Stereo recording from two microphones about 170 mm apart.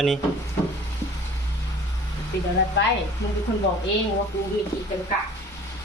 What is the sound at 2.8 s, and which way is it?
Speech, 90° left.